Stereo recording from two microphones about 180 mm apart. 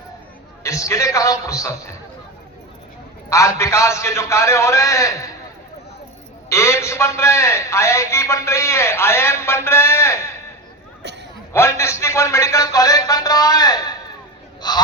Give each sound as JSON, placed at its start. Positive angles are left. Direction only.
{"t": 0.6, "sound": "a man's voice", "side_deg": 15}
{"t": 3.2, "sound": "a man's voice", "side_deg": 15}
{"t": 6.5, "sound": "a man's voice", "side_deg": 15}
{"t": 11.5, "sound": "a man's voice", "side_deg": 15}